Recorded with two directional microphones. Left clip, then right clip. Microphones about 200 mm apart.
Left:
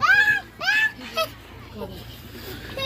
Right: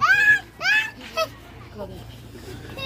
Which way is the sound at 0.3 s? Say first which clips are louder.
Right 3 dB; 45° right (ahead or behind).